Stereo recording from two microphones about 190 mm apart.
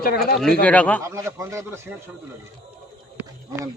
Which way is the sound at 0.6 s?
5° left (ahead or behind).